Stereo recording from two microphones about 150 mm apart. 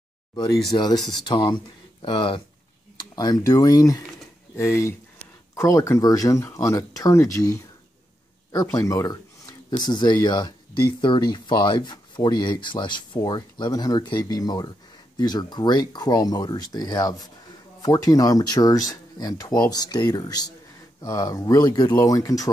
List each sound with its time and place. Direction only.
0.7 s speech: 20° left (ahead or behind)